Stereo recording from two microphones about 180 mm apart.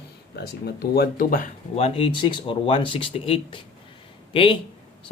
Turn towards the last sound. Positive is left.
turn(degrees=30)  # may be behind; listen again after turning